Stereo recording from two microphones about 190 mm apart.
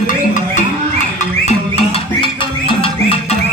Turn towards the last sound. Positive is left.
turn(degrees=30)  # may be behind; listen again after turning